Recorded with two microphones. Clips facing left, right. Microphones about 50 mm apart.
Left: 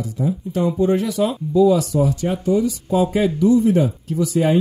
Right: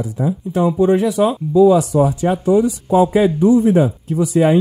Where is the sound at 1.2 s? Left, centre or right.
Right.